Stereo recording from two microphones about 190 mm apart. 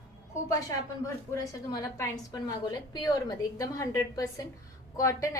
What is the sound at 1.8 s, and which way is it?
A woman's voice, 20° left (ahead or behind).